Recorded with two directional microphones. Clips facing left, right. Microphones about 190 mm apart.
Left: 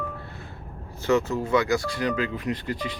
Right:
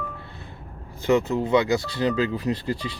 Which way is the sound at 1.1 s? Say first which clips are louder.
Right 2 dB; 15° right (ahead or behind).